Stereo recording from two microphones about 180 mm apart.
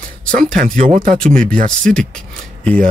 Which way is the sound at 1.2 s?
5° left (ahead or behind).